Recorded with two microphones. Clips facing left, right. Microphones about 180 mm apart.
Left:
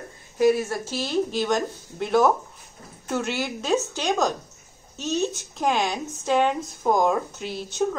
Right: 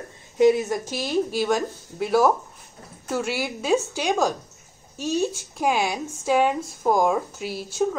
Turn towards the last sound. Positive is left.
turn(degrees=-5)  # may be behind; listen again after turning